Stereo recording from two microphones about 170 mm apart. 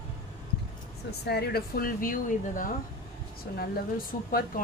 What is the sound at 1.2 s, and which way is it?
Speech, 70° left (ahead or behind).